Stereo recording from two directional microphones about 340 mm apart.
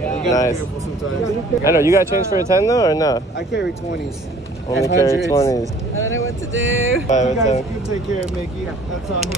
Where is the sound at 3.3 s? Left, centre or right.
Left.